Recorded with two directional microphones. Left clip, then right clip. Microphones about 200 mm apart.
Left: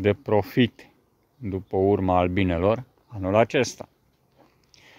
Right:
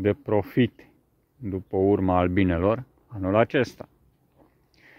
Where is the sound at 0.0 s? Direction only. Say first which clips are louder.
Left 2 dB; 10° left (ahead or behind).